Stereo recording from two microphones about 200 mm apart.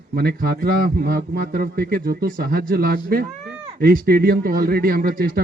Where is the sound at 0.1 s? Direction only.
50° right (ahead or behind).